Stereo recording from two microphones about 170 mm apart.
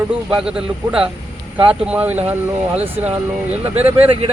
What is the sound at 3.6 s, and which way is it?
Speech, 35° right (ahead or behind).